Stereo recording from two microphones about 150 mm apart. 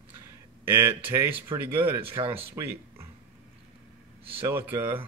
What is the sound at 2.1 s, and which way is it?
Speech, 35° right (ahead or behind).